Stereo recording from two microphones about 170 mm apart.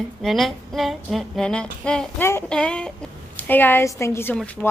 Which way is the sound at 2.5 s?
5° left (ahead or behind).